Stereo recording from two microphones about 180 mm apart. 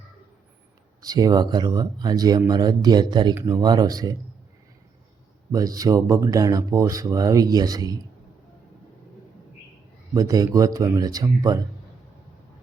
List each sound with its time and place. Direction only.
1.0 s speech: 20° right (ahead or behind)
5.5 s speech: 20° right (ahead or behind)
10.2 s speech: 20° right (ahead or behind)